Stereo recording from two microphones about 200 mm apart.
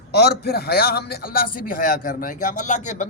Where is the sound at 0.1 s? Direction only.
55° left (ahead or behind).